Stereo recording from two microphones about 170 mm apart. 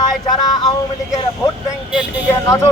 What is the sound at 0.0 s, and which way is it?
Speech, 25° left (ahead or behind).